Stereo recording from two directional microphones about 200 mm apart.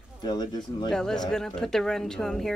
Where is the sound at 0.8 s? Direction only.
5° left (ahead or behind).